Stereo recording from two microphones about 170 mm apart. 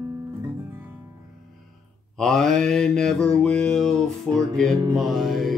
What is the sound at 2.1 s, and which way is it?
Mantra, centre (ahead or behind).